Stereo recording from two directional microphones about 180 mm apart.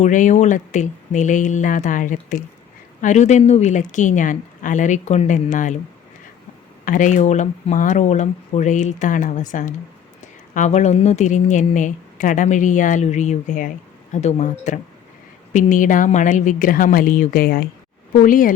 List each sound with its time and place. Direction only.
0.0 s speech: 45° left (ahead or behind)
6.8 s speech: 45° left (ahead or behind)